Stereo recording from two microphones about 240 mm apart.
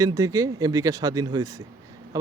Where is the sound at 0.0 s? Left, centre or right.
Centre.